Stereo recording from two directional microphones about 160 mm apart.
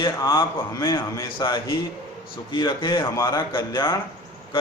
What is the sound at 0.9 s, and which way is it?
Speech, 20° left (ahead or behind).